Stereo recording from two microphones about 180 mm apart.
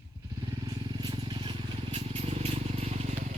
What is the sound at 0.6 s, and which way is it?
Vehicle, 25° right (ahead or behind).